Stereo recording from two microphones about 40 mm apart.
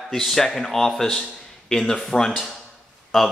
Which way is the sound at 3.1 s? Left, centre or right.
Centre.